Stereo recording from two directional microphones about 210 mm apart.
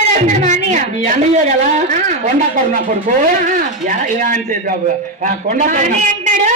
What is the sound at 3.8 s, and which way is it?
A man's voice, 40° right (ahead or behind).